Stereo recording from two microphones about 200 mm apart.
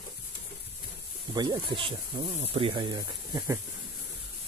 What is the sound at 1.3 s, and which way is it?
Speech, 20° right (ahead or behind).